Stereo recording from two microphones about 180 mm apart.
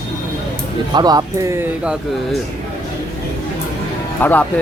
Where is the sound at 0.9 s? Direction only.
25° right (ahead or behind); by 2.4 s 5° right (ahead or behind).